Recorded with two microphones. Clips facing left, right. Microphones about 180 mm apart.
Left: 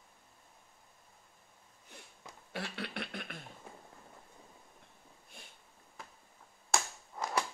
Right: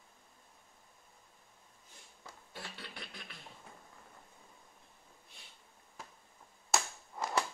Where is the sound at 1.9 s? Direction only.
65° left (ahead or behind).